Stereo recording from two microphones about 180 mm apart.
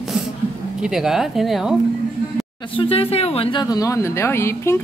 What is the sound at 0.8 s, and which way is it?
Speech, 5° right (ahead or behind).